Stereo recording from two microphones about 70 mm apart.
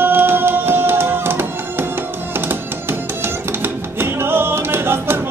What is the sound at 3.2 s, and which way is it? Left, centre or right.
Music, right.